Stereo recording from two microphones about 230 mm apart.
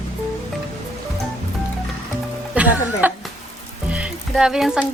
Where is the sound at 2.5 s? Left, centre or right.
Centre.